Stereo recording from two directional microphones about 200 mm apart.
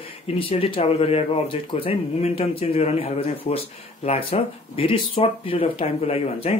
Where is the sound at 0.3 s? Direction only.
30° left (ahead or behind).